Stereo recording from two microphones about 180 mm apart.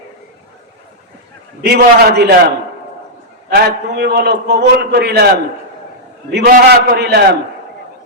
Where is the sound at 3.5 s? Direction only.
60° right (ahead or behind).